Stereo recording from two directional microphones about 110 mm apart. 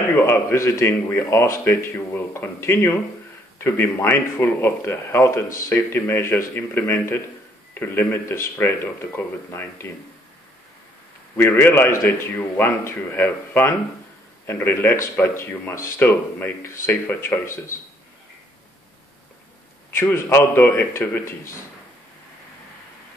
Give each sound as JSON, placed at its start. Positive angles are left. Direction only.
{"t": 0.1, "sound": "speech", "side_deg": 20}
{"t": 11.3, "sound": "speech", "side_deg": 20}
{"t": 19.9, "sound": "speech", "side_deg": 20}